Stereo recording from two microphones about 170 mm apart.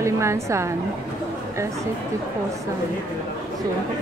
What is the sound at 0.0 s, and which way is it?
Speech, 15° right (ahead or behind).